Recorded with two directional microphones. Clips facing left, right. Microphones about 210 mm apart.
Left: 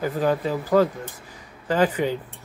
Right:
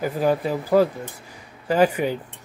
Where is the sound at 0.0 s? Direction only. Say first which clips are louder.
Right 1 dB; 10° right (ahead or behind).